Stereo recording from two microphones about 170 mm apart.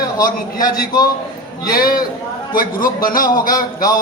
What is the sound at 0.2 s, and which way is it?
A man's voice, 55° left (ahead or behind).